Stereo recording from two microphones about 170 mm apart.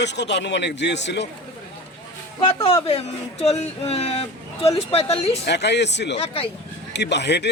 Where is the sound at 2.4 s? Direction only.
35° left (ahead or behind).